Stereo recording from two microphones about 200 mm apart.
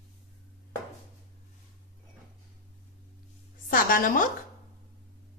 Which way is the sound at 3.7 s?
45° left (ahead or behind).